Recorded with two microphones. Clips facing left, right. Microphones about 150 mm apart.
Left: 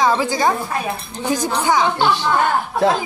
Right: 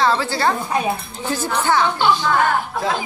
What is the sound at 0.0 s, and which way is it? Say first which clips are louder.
A woman's voice: left 1 dB; 15° left (ahead or behind).